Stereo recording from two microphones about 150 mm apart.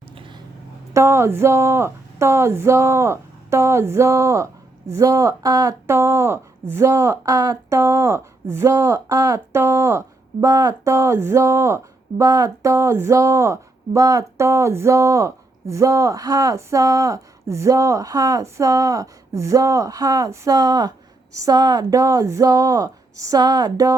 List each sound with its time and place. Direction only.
0.9 s speech: 20° right (ahead or behind)